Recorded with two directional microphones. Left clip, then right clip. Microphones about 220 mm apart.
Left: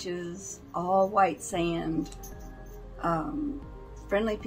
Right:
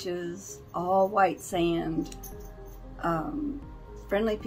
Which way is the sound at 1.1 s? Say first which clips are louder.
Even; 5° right (ahead or behind).